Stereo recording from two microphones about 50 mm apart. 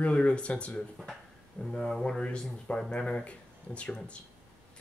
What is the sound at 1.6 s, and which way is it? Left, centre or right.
Speech, centre.